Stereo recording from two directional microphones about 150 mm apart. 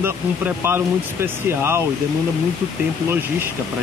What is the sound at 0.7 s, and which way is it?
Speech, 15° right (ahead or behind).